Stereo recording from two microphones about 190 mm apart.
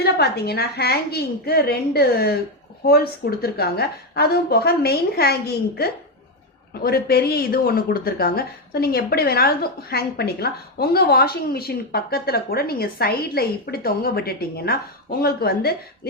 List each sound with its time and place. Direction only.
0.0 s a woman's voice: 55° left (ahead or behind)